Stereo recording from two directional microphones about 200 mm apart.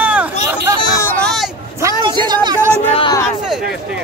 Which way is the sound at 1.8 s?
20° right (ahead or behind).